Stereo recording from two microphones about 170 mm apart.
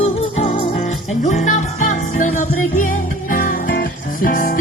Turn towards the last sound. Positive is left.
turn(degrees=55)  # may be behind; listen again after turning